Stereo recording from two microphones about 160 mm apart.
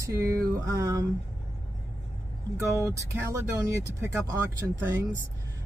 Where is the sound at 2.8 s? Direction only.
20° right (ahead or behind).